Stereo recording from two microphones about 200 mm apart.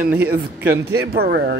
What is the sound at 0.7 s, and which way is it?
Speech, 50° right (ahead or behind).